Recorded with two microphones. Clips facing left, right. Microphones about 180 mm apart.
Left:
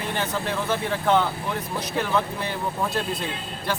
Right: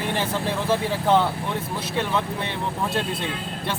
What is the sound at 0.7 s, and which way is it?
Speech, 30° right (ahead or behind).